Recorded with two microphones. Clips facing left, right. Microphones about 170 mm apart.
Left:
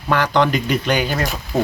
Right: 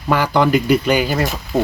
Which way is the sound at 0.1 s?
10° right (ahead or behind).